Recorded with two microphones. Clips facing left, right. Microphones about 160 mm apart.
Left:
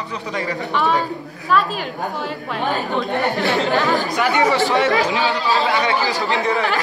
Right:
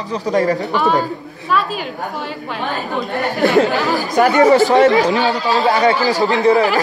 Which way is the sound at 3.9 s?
45° right (ahead or behind).